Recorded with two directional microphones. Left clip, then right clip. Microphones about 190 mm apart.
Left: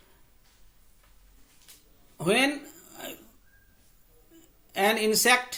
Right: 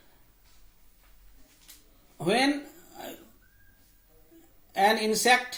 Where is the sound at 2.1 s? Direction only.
60° left (ahead or behind).